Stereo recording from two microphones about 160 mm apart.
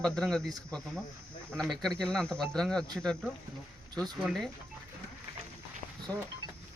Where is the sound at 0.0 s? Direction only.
5° left (ahead or behind).